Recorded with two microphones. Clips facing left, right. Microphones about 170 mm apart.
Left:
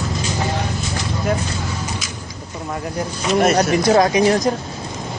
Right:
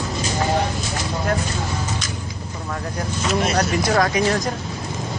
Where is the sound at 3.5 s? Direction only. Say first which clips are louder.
Left 5 dB; 20° left (ahead or behind).